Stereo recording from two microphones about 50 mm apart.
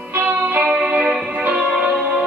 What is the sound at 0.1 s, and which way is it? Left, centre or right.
Music, right.